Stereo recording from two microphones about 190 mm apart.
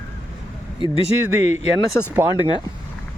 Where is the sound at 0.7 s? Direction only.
25° left (ahead or behind).